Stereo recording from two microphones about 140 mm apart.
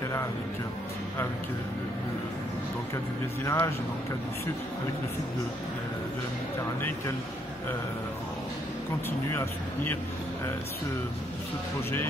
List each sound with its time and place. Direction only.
3.4 s speech: 20° left (ahead or behind)
9.3 s speech: 15° left (ahead or behind)